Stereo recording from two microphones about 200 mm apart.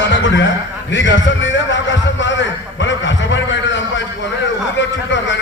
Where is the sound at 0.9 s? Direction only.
65° left (ahead or behind).